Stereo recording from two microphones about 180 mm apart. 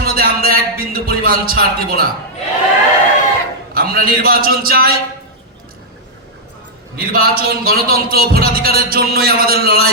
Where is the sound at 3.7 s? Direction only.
55° right (ahead or behind).